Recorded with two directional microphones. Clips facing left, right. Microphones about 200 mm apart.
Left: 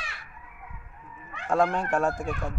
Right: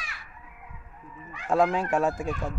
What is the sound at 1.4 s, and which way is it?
Speech, centre (ahead or behind).